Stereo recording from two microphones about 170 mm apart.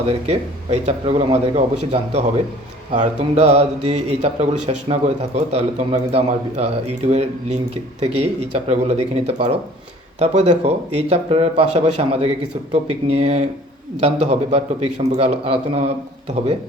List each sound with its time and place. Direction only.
0.0 s speech: 40° right (ahead or behind)